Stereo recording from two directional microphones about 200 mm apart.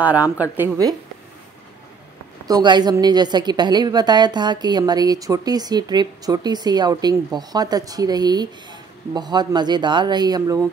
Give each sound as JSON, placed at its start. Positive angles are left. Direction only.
{"t": 0.0, "sound": "speech", "side_deg": -10}
{"t": 2.4, "sound": "a woman's voice", "side_deg": -20}